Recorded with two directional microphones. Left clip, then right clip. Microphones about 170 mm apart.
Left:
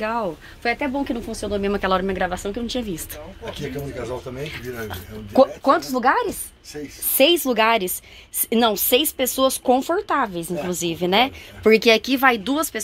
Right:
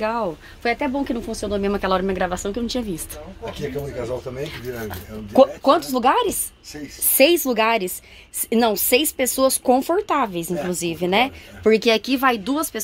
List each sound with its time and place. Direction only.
0.0 s speech: 10° right (ahead or behind)
0.7 s speech: 20° right (ahead or behind)
1.7 s speech: 10° right (ahead or behind)
4.4 s speech: 15° right (ahead or behind)